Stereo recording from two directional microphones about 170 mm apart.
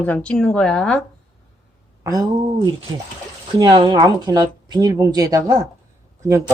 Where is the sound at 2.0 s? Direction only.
20° right (ahead or behind).